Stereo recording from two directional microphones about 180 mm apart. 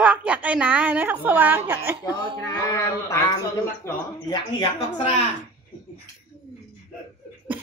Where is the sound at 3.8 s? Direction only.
25° left (ahead or behind).